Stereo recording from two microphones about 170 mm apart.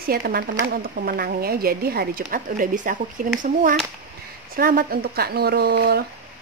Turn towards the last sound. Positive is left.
turn(degrees=-70)  # may be behind; listen again after turning